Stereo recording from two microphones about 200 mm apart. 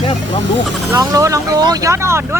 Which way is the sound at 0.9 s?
15° right (ahead or behind).